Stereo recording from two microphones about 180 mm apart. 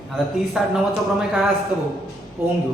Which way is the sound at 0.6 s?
5° right (ahead or behind).